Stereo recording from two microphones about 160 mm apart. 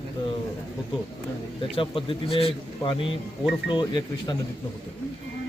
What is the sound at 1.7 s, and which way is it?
A man's voice, 35° left (ahead or behind).